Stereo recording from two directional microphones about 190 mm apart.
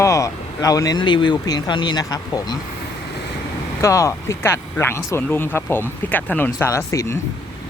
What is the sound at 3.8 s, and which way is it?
Speech, 15° left (ahead or behind).